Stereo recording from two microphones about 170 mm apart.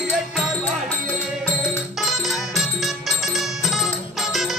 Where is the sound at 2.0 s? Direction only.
Centre (ahead or behind).